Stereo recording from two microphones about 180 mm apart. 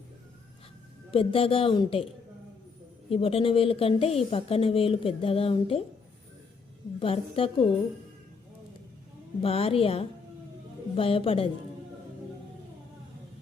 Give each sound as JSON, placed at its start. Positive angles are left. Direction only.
{"t": 1.1, "sound": "speech", "side_deg": 30}
{"t": 3.1, "sound": "speech", "side_deg": 30}
{"t": 7.0, "sound": "speech", "side_deg": 30}
{"t": 9.4, "sound": "speech", "side_deg": 30}